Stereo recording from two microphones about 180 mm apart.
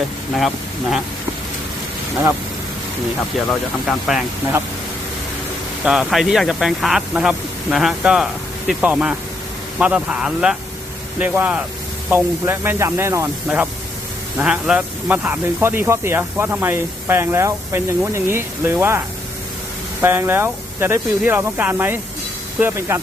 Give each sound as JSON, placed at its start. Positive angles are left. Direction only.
{"t": 0.3, "sound": "speech", "side_deg": 0}
{"t": 3.9, "sound": "speech", "side_deg": 0}
{"t": 5.8, "sound": "speech", "side_deg": -5}